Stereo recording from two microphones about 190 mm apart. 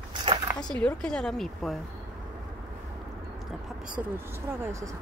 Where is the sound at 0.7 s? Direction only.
5° left (ahead or behind).